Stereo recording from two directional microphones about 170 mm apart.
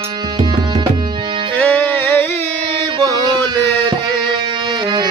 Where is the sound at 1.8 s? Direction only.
10° left (ahead or behind).